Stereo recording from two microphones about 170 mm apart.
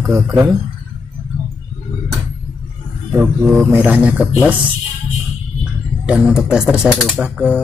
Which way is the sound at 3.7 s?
10° right (ahead or behind).